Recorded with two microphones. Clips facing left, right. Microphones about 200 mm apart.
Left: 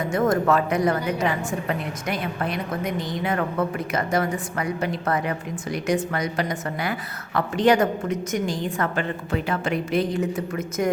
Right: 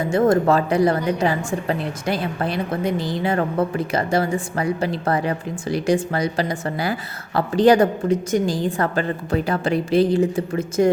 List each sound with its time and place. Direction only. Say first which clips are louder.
0.0 s a woman's voice: right 4 dB; 30° right (ahead or behind)